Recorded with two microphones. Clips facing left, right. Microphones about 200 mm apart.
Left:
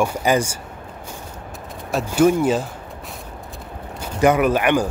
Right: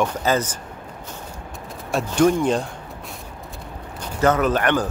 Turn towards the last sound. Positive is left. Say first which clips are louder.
# left 2 dB
turn(degrees=10)  # may be behind; listen again after turning